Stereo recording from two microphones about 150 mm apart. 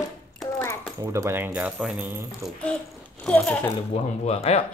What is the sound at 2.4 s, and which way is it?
Speech, 5° left (ahead or behind).